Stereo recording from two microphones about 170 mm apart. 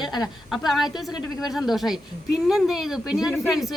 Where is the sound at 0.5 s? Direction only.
Centre (ahead or behind).